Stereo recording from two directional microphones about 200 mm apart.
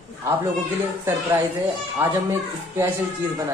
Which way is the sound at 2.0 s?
10° right (ahead or behind).